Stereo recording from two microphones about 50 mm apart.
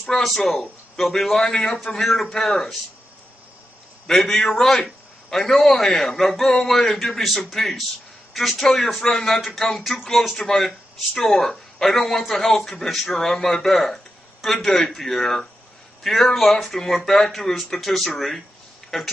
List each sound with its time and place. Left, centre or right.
0.0 s speech: centre
4.1 s speech: centre